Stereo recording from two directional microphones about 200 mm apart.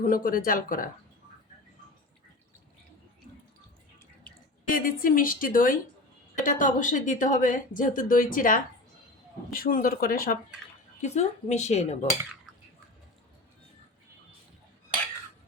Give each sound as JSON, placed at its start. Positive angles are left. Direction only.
{"t": 0.0, "sound": "a woman's voice", "side_deg": 40}
{"t": 4.7, "sound": "a woman's voice", "side_deg": 45}